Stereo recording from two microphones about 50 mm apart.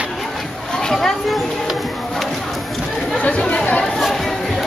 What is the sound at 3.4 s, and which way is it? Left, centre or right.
Chatter, left.